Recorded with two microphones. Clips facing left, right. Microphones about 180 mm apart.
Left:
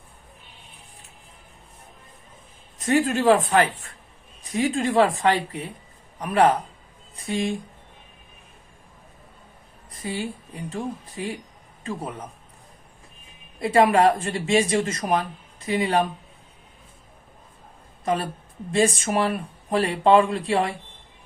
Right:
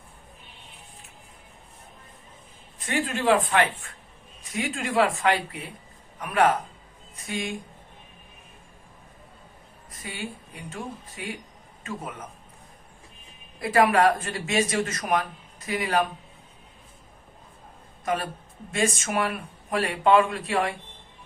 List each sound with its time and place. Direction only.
2.7 s speech: 40° left (ahead or behind)
10.0 s speech: 30° left (ahead or behind)
13.6 s speech: 25° left (ahead or behind)
18.0 s speech: 30° left (ahead or behind)